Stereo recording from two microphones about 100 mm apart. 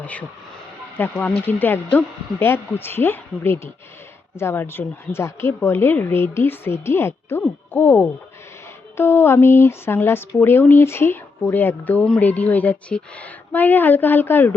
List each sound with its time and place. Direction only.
0.0 s speech: 15° left (ahead or behind)